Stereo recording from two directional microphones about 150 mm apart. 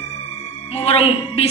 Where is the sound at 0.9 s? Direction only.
40° left (ahead or behind).